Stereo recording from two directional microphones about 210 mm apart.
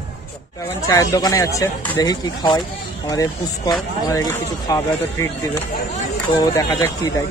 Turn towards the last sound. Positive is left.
turn(degrees=15)  # may be behind; listen again after turning